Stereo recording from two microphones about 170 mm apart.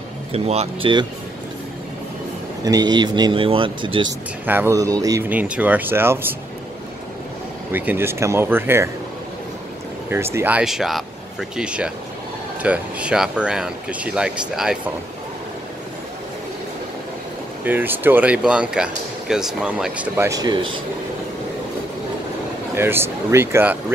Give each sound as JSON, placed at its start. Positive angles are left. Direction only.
{"t": 0.3, "sound": "speech", "side_deg": -35}
{"t": 2.6, "sound": "speech", "side_deg": -25}
{"t": 4.5, "sound": "speech", "side_deg": -15}
{"t": 5.3, "sound": "speech", "side_deg": -10}
{"t": 7.7, "sound": "speech", "side_deg": -10}
{"t": 10.0, "sound": "speech", "side_deg": -15}
{"t": 17.6, "sound": "speech", "side_deg": -10}
{"t": 20.2, "sound": "speech", "side_deg": -25}
{"t": 22.8, "sound": "speech", "side_deg": -15}